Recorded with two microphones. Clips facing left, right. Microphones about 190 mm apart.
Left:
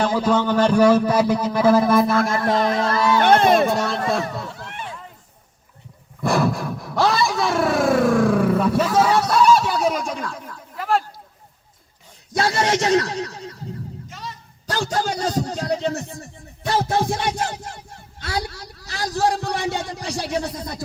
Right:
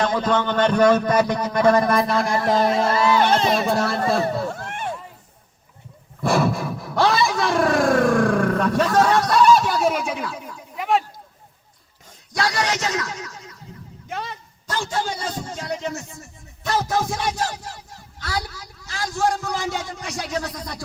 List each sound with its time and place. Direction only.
0.0 s a man's voice: 10° left (ahead or behind)
2.6 s a sound: 20° right (ahead or behind)
3.2 s speech: 55° left (ahead or behind)
3.7 s speech: centre (ahead or behind)
4.4 s a sound: 50° right (ahead or behind)
6.2 s vehicle: centre (ahead or behind)
12.4 s a man's voice: 25° left (ahead or behind)
14.1 s a sound: 60° right (ahead or behind)
14.7 s a man's voice: 40° left (ahead or behind)
18.4 s a man's voice: 65° left (ahead or behind)
18.9 s a man's voice: 35° left (ahead or behind)